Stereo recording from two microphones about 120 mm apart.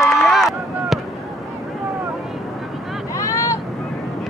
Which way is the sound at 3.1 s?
25° left (ahead or behind).